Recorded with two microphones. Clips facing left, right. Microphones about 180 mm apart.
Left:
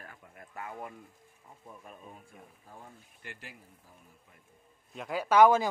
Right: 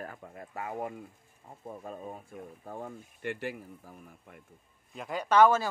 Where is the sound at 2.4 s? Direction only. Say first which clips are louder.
Right 11 dB; 65° right (ahead or behind).